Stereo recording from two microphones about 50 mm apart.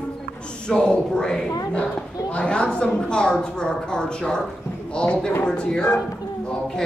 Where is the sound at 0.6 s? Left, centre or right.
Centre.